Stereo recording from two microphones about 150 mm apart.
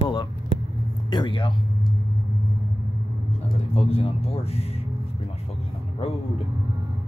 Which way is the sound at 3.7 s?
40° left (ahead or behind).